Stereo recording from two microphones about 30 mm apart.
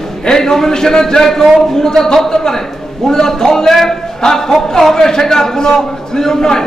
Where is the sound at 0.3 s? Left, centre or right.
Centre.